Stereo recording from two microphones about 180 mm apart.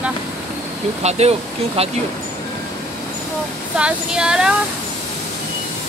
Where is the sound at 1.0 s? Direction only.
35° right (ahead or behind).